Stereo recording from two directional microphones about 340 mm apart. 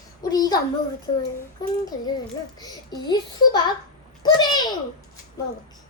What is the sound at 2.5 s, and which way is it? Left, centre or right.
Speech, centre.